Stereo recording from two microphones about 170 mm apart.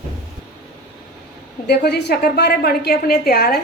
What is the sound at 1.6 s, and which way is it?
A woman's voice, 75° left (ahead or behind).